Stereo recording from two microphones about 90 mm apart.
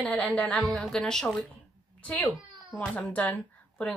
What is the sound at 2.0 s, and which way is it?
A woman's voice, 15° left (ahead or behind).